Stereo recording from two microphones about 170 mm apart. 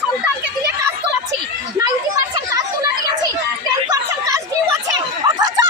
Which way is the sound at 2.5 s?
20° right (ahead or behind).